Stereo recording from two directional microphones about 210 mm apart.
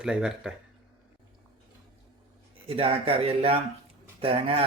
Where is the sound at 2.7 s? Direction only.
25° right (ahead or behind).